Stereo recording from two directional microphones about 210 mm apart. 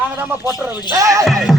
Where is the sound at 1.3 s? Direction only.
Centre (ahead or behind).